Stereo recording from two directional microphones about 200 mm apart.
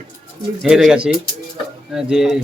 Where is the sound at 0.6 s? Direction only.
5° right (ahead or behind).